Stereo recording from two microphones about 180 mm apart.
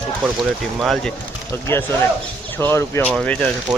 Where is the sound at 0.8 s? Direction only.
Centre (ahead or behind).